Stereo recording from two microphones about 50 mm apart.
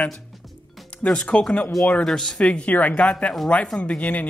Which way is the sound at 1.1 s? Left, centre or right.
Centre.